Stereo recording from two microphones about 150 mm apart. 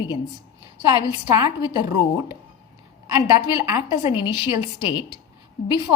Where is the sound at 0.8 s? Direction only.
25° right (ahead or behind).